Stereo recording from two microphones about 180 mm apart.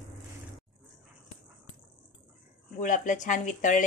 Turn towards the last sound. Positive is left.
turn(degrees=45)  # may be behind; listen again after turning